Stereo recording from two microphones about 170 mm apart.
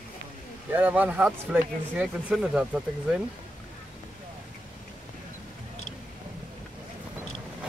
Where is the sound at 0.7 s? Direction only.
10° right (ahead or behind).